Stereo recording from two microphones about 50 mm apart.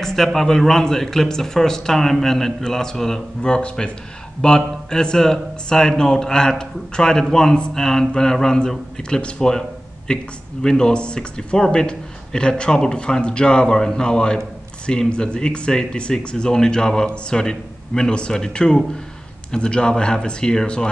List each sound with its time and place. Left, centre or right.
0.0 s a man's voice: centre